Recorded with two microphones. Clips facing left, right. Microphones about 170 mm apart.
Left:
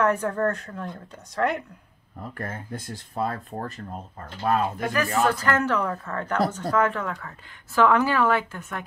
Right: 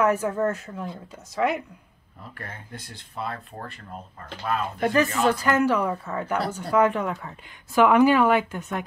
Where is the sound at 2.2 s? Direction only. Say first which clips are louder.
Left 6 dB; 45° left (ahead or behind).